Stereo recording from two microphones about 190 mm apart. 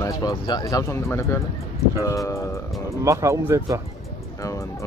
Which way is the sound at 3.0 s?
15° right (ahead or behind).